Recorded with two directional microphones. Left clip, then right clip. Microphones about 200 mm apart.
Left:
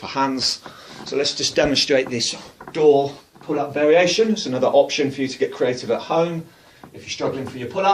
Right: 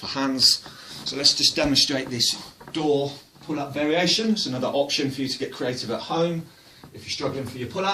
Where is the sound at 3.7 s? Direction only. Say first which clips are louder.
Left 7 dB; 25° right (ahead or behind).